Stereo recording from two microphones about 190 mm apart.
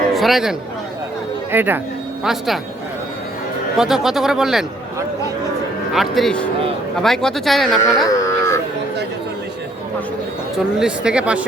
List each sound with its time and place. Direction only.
0.1 s speech: centre (ahead or behind)
1.5 s speech: 10° right (ahead or behind)
3.8 s speech: centre (ahead or behind)
5.9 s speech: centre (ahead or behind)
8.0 s livestock: 15° left (ahead or behind)
10.8 s speech: 5° right (ahead or behind)